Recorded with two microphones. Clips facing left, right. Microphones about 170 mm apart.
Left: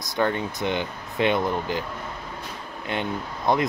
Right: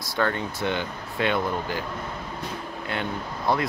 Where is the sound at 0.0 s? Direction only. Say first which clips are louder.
Left 2 dB; 20° left (ahead or behind).